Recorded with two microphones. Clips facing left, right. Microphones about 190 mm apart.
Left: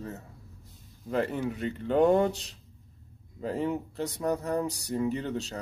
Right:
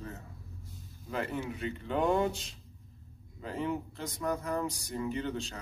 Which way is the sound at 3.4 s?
40° left (ahead or behind).